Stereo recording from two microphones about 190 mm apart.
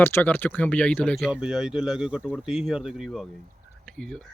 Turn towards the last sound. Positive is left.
turn(degrees=5)  # may be behind; listen again after turning